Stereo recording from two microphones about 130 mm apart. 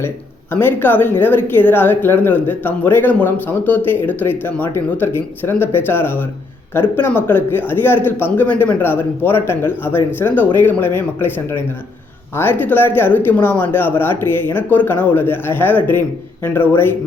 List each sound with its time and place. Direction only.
0.5 s speech: 15° left (ahead or behind)